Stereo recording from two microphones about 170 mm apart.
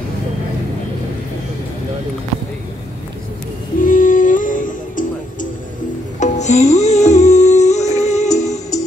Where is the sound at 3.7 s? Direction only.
50° left (ahead or behind).